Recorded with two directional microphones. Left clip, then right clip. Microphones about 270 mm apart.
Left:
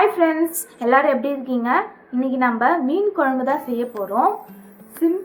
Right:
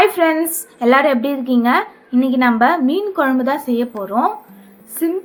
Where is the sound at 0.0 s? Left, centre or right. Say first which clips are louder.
Right 3 dB; right.